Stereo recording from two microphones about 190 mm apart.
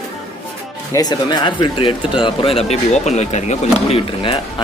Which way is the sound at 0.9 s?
20° left (ahead or behind).